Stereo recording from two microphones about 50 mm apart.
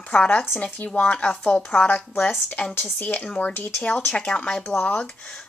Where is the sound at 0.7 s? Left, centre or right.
Left.